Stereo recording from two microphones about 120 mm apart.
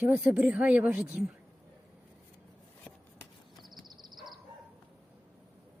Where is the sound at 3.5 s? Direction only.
Centre (ahead or behind).